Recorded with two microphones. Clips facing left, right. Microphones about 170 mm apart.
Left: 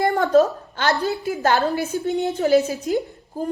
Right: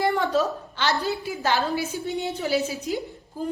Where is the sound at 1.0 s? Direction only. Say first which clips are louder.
Left 5 dB; 50° left (ahead or behind).